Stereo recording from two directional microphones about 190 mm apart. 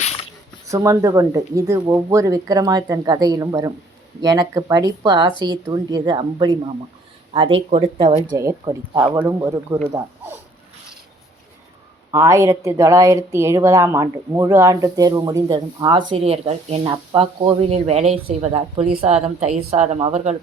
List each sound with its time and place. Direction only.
0.7 s a woman's voice: 15° right (ahead or behind)
12.1 s a woman's voice: 15° right (ahead or behind); by 20.3 s 35° right (ahead or behind)